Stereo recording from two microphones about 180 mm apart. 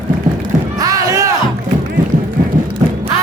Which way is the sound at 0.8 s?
20° right (ahead or behind).